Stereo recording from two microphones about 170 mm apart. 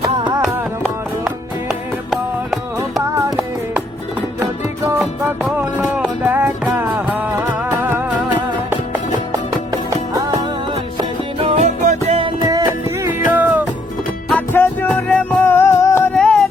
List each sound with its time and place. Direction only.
2.0 s music: centre (ahead or behind)
4.9 s music: 15° right (ahead or behind)
10.2 s music: 20° right (ahead or behind)
10.9 s music: 35° right (ahead or behind)
12.5 s music: 20° right (ahead or behind)
14.3 s music: 10° left (ahead or behind)
16.1 s music: 5° left (ahead or behind)